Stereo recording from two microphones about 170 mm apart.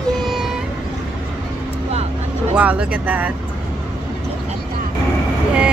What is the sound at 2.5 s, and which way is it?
Speech, 10° right (ahead or behind).